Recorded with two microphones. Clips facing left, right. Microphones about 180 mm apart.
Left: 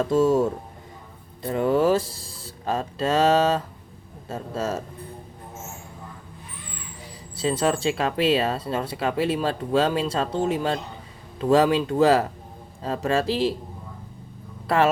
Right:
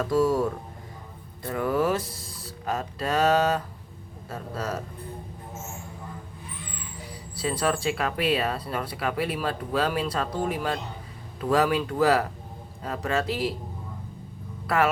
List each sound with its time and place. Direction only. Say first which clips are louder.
0.0 s speech: left 3 dB; 25° left (ahead or behind)
7.1 s speech: left 4 dB; 25° left (ahead or behind)